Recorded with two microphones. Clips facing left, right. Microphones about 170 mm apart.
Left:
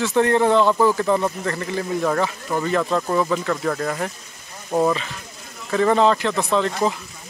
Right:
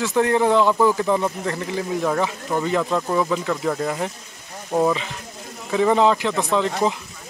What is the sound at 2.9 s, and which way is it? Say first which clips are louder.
Speech: left 1 dB; 5° right (ahead or behind).